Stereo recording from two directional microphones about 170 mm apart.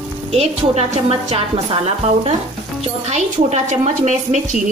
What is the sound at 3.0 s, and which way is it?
A woman's voice, 40° right (ahead or behind).